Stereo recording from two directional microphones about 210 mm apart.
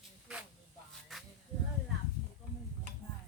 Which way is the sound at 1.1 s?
Centre (ahead or behind).